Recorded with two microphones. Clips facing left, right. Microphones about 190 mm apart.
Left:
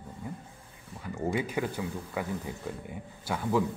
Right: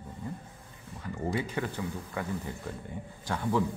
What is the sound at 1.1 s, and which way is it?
Speech, 10° left (ahead or behind).